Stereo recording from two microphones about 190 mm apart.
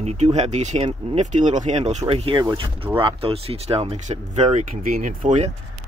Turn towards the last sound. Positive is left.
turn(degrees=-40)  # may be behind; listen again after turning